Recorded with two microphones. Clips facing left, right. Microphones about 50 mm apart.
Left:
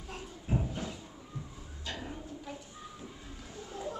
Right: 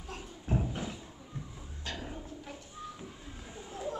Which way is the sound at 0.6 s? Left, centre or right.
Centre.